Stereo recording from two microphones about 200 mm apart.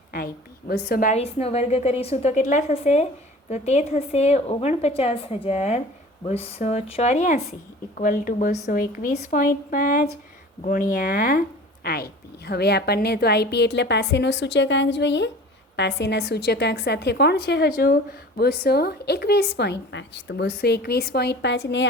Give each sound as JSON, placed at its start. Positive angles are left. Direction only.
{"t": 0.7, "sound": "a woman's voice", "side_deg": 45}